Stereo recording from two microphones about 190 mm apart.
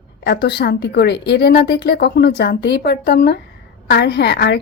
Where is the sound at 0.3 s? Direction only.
60° left (ahead or behind).